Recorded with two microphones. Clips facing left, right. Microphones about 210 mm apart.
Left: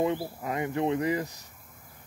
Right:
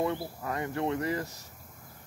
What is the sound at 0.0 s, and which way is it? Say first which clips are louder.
Speech: left 3 dB; 15° left (ahead or behind).